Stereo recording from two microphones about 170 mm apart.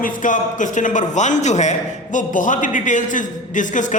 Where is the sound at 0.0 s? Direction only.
50° left (ahead or behind).